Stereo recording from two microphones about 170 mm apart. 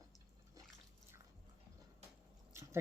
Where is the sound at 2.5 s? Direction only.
15° right (ahead or behind).